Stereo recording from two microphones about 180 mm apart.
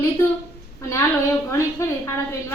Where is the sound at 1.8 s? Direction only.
15° left (ahead or behind).